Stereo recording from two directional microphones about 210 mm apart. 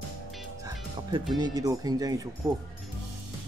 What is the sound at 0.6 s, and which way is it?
Music, 20° right (ahead or behind).